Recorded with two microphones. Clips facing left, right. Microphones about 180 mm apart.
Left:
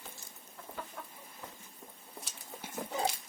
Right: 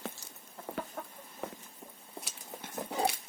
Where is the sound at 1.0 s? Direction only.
45° right (ahead or behind).